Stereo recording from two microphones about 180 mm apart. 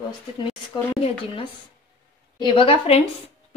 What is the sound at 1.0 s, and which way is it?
A woman's voice, 30° left (ahead or behind).